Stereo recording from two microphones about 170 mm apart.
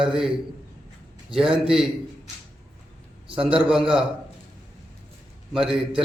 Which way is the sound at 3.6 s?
5° right (ahead or behind).